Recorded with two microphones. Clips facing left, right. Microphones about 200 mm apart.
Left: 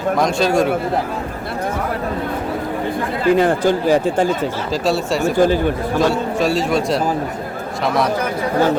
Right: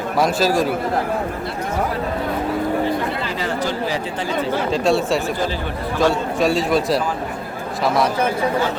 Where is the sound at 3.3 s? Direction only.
55° left (ahead or behind).